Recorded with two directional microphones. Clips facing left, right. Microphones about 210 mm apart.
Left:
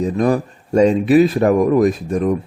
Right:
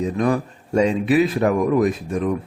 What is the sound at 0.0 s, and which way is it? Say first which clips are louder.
A man's voice: left 3 dB; 40° left (ahead or behind).